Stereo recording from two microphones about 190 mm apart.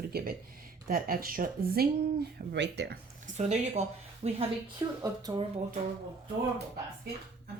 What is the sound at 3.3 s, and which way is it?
Speech, 35° right (ahead or behind).